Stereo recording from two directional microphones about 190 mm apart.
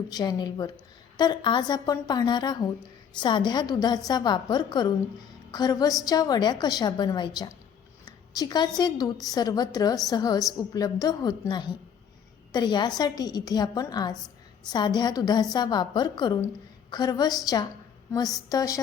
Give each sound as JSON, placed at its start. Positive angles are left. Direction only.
{"t": 0.1, "sound": "a woman's voice", "side_deg": 20}